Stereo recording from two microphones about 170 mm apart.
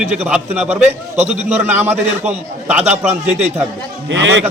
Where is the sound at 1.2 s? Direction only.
40° right (ahead or behind).